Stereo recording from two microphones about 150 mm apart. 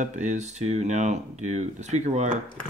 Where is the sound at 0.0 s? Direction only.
50° right (ahead or behind).